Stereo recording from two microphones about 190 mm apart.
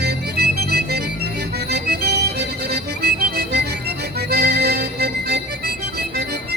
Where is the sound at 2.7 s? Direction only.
50° right (ahead or behind).